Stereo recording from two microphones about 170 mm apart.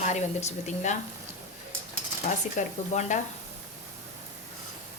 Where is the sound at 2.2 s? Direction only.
45° left (ahead or behind).